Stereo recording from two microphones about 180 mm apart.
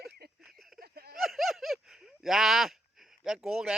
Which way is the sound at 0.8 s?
55° right (ahead or behind).